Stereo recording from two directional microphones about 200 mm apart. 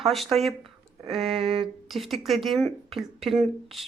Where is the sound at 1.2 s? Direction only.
30° right (ahead or behind).